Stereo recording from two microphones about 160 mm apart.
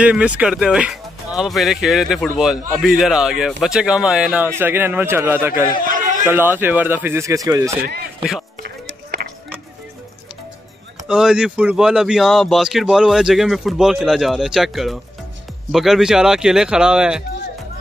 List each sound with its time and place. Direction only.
0.0 s speech: 10° right (ahead or behind)
8.2 s speech: centre (ahead or behind)
8.6 s music: 75° right (ahead or behind)
11.1 s speech: 5° right (ahead or behind)